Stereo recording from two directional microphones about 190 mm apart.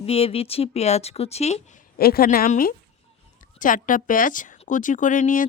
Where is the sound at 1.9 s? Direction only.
55° left (ahead or behind).